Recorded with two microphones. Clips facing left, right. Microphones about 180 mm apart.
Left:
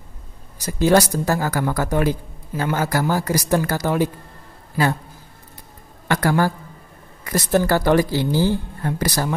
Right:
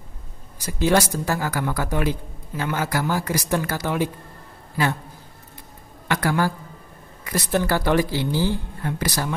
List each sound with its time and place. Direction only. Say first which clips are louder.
0.7 s a woman's voice: left 4 dB; 40° left (ahead or behind)
6.0 s a woman's voice: left 3 dB; 40° left (ahead or behind)